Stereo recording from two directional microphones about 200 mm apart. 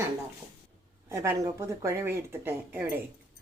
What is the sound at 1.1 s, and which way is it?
Speech, 15° right (ahead or behind).